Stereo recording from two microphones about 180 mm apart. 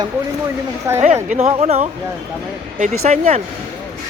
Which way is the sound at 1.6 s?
40° right (ahead or behind).